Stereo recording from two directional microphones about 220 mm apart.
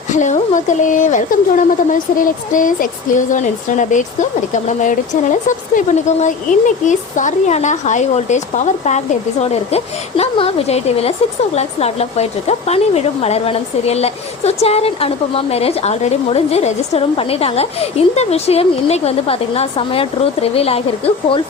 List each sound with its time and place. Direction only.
0.1 s a woman's voice: 35° left (ahead or behind)